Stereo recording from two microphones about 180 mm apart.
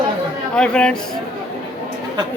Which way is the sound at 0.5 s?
5° left (ahead or behind).